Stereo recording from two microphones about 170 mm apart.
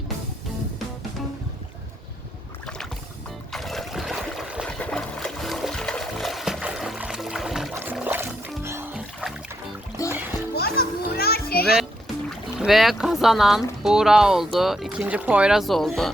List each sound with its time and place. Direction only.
3.5 s trickle: centre (ahead or behind)
7.7 s a sound: 15° right (ahead or behind)
7.9 s music: 10° right (ahead or behind)
8.9 s music: 5° right (ahead or behind)
10.0 s music: 20° left (ahead or behind)
10.5 s children playing: 65° left (ahead or behind)
11.8 s speech: centre (ahead or behind)